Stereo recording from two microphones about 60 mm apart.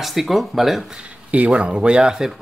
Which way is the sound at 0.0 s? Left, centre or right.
Centre.